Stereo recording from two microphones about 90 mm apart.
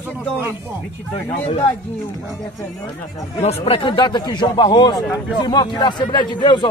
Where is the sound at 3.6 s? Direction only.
90° left.